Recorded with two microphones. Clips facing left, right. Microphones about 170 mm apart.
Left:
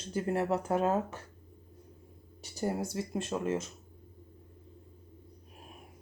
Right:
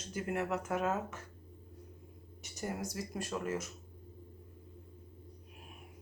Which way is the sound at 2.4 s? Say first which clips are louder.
Left 6 dB; 30° left (ahead or behind).